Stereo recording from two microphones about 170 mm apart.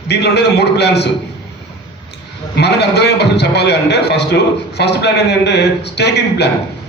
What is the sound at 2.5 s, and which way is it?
A man's voice, 75° left (ahead or behind).